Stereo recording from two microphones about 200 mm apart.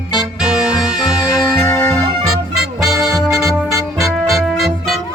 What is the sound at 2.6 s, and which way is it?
Music, centre (ahead or behind).